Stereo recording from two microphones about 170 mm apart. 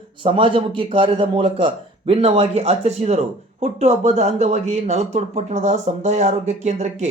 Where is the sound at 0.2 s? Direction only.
30° right (ahead or behind).